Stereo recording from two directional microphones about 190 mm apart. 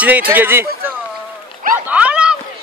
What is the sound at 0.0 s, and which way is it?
Speech, 10° right (ahead or behind).